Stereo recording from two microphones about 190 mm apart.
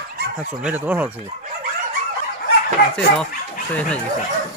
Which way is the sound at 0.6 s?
10° right (ahead or behind).